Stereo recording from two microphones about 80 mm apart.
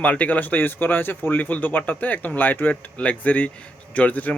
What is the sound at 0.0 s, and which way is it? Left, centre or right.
Speech, centre.